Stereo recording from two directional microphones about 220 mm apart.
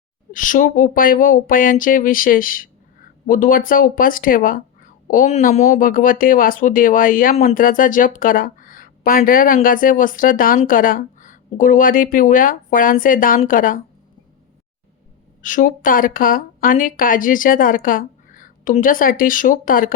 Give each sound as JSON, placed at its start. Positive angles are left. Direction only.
{"t": 0.3, "sound": "speech", "side_deg": 35}
{"t": 15.4, "sound": "speech", "side_deg": 35}